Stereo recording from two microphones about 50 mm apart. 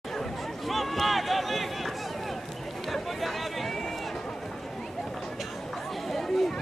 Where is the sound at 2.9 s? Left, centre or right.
Centre.